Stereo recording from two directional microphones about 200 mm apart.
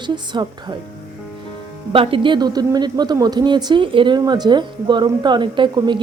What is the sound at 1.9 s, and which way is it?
A woman's voice, 25° right (ahead or behind).